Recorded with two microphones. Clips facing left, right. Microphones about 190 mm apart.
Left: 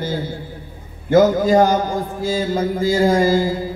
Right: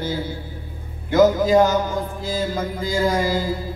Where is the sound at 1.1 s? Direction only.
55° left (ahead or behind).